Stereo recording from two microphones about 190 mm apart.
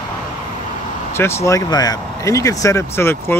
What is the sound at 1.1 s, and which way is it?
Speech, 15° left (ahead or behind).